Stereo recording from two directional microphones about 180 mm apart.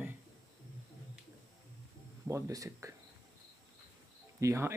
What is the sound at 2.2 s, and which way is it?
Speech, 15° right (ahead or behind).